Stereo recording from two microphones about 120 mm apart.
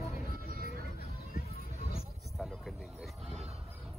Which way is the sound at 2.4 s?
Centre (ahead or behind).